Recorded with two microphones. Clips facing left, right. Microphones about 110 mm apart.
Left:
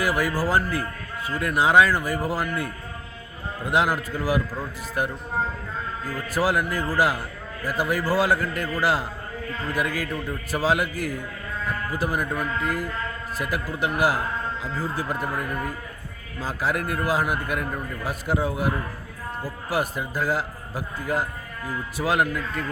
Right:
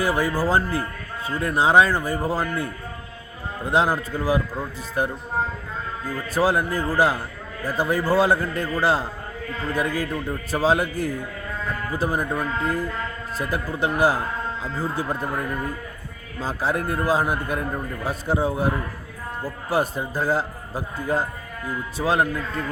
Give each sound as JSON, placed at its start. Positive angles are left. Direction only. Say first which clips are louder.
{"t": 0.0, "sound": "a man's voice", "louder": "right 2 dB", "side_deg": -25}
{"t": 6.2, "sound": "a man's voice", "louder": "right 2 dB", "side_deg": -25}
{"t": 16.4, "sound": "a man's voice", "louder": "right 2 dB", "side_deg": -25}